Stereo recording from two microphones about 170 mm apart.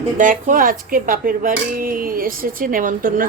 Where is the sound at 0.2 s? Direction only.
50° right (ahead or behind).